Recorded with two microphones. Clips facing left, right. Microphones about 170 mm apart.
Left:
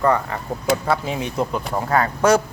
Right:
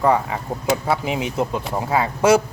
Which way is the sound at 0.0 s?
10° right (ahead or behind).